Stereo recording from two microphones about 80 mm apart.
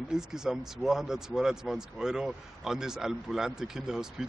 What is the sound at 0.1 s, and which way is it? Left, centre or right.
Speech, centre.